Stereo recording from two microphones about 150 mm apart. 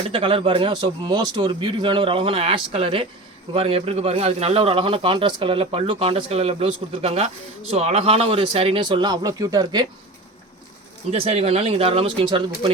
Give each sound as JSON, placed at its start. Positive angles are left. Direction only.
{"t": 0.1, "sound": "a man's voice", "side_deg": -35}
{"t": 11.1, "sound": "a man's voice", "side_deg": -45}